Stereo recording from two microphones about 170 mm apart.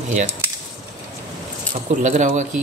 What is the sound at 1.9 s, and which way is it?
Speech, 45° right (ahead or behind).